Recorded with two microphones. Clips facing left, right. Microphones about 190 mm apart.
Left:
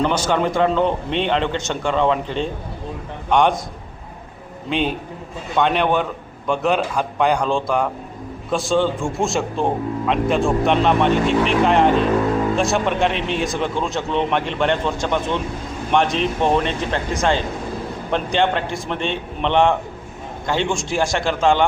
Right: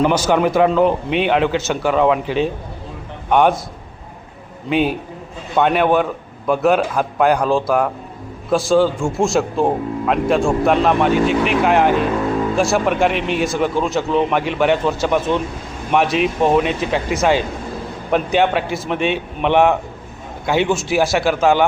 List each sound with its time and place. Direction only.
0.0 s a man's voice: 10° right (ahead or behind)
4.7 s a man's voice: 5° right (ahead or behind)